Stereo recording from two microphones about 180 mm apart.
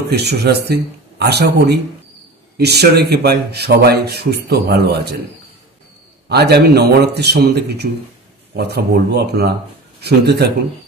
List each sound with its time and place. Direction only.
0.1 s speech: 65° right (ahead or behind)
6.2 s speech: 65° right (ahead or behind)